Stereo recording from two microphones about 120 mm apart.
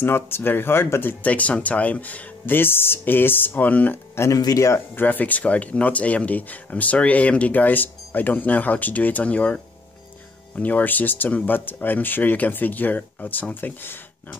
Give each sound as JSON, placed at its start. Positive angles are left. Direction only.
{"t": 0.0, "sound": "speech", "side_deg": 20}